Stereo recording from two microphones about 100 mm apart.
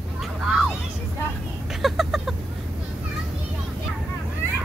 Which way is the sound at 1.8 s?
Centre (ahead or behind).